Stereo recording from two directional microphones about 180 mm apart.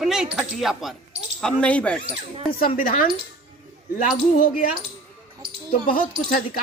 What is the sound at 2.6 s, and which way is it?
Speech, 50° left (ahead or behind).